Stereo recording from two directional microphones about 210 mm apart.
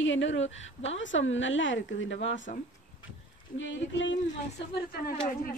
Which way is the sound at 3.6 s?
60° left (ahead or behind).